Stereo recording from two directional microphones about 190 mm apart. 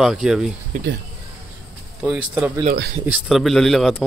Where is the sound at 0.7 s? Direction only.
40° right (ahead or behind).